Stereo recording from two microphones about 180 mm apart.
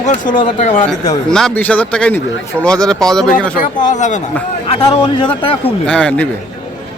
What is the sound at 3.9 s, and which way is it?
Speech, 40° left (ahead or behind).